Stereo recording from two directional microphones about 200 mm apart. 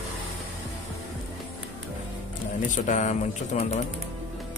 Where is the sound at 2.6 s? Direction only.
40° left (ahead or behind).